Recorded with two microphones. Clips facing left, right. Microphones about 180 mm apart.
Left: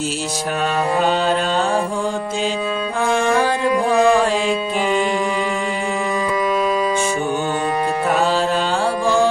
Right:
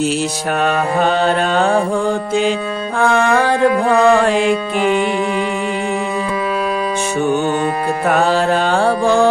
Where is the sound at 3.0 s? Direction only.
60° right (ahead or behind).